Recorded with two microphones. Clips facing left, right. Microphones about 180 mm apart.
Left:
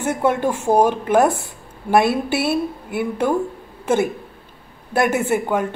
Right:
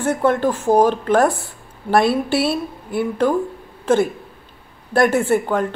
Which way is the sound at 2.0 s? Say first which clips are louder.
Right 2 dB; 55° left (ahead or behind).